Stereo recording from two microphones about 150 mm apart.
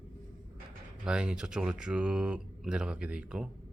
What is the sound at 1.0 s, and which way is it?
Speech, 5° right (ahead or behind).